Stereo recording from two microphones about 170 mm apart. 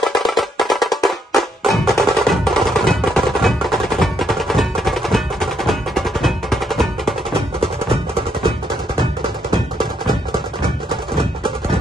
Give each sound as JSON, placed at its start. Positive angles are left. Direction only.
{"t": 0.0, "sound": "music", "side_deg": 0}
{"t": 7.3, "sound": "music", "side_deg": -30}